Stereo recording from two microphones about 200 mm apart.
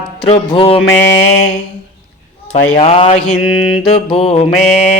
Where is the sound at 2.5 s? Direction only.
35° left (ahead or behind).